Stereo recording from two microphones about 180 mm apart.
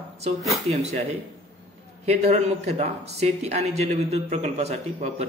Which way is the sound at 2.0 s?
35° right (ahead or behind).